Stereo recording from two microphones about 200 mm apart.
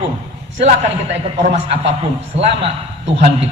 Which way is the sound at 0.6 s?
35° right (ahead or behind).